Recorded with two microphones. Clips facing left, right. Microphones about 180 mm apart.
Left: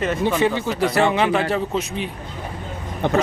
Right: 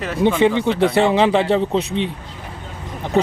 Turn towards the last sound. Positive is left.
turn(degrees=65)  # may be behind; listen again after turning